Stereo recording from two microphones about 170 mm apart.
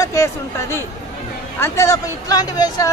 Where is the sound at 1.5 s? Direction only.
15° left (ahead or behind).